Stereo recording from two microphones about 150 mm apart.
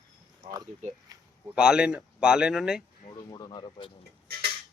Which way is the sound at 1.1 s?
25° right (ahead or behind).